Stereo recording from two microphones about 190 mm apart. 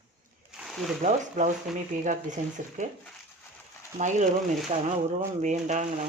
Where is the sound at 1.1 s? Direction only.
40° right (ahead or behind).